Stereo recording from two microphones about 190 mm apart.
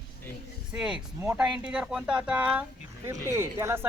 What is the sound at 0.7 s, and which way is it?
Speech, 5° right (ahead or behind).